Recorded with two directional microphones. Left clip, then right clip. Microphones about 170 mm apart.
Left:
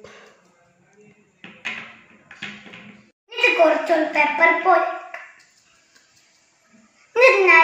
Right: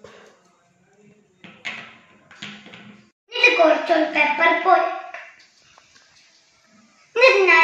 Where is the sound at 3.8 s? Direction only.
5° left (ahead or behind).